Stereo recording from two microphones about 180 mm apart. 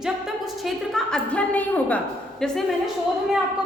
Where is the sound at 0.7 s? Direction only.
5° left (ahead or behind).